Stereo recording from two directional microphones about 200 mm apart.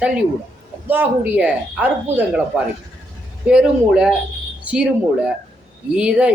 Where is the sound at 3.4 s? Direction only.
5° right (ahead or behind).